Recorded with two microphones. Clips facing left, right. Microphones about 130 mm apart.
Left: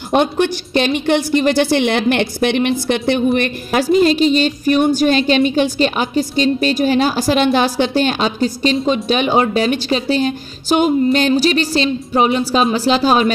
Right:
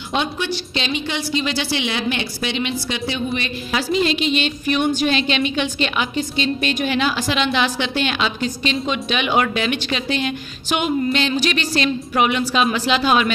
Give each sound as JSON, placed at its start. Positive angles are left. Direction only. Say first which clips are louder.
{"t": 0.1, "sound": "a woman's voice", "louder": "left 8 dB", "side_deg": 50}
{"t": 3.9, "sound": "speech", "louder": "left 7 dB", "side_deg": 40}